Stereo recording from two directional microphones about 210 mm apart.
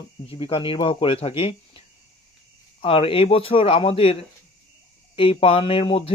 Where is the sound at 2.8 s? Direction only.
25° left (ahead or behind).